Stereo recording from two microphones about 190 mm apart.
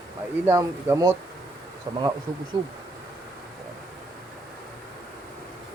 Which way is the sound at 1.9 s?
30° right (ahead or behind).